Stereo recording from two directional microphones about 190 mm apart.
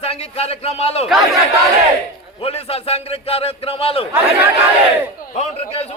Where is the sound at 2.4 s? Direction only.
30° left (ahead or behind).